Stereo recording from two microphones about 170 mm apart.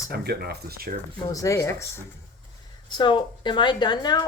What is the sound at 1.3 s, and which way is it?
Speech, 20° left (ahead or behind).